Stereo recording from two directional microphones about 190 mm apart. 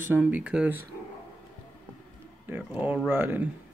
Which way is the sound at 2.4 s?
10° right (ahead or behind).